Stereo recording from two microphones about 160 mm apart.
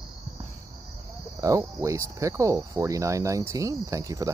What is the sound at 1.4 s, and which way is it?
Cricket, 20° right (ahead or behind).